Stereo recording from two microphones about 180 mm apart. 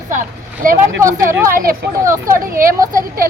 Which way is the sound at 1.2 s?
15° right (ahead or behind).